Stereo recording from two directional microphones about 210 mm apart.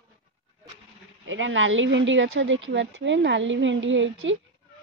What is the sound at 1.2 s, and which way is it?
Speech, 65° right (ahead or behind).